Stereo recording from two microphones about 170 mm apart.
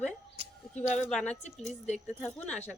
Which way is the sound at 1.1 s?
5° left (ahead or behind).